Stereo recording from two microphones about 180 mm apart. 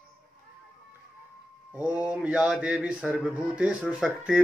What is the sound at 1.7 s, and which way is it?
Speech, 10° right (ahead or behind).